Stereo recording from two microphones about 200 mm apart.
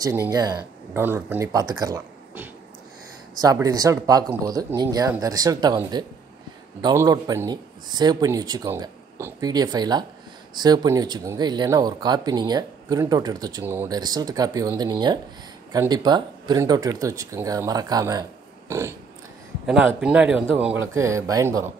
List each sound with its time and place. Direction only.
0.0 s speech: 15° right (ahead or behind)
18.7 s a sound: 15° right (ahead or behind)
19.6 s speech: 5° right (ahead or behind)